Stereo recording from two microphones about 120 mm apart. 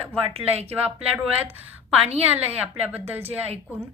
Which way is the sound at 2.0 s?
60° right (ahead or behind).